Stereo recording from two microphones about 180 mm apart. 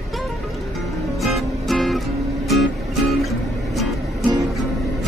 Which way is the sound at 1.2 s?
Centre (ahead or behind).